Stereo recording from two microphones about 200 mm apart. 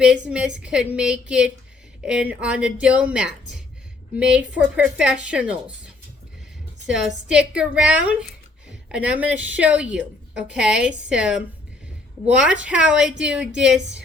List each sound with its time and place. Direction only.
0.0 s a woman's voice: 5° right (ahead or behind)
6.8 s a woman's voice: 5° right (ahead or behind)